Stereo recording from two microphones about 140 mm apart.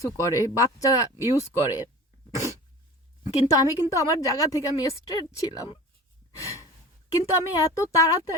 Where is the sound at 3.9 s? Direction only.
25° left (ahead or behind).